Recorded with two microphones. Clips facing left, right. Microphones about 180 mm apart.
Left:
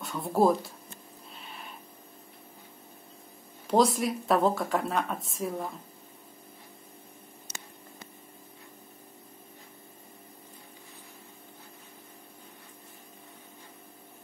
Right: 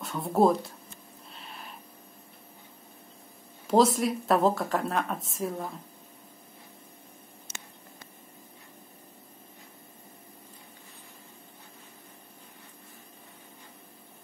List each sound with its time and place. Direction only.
0.0 s speech: centre (ahead or behind)
1.3 s a sound: centre (ahead or behind)
3.6 s speech: centre (ahead or behind)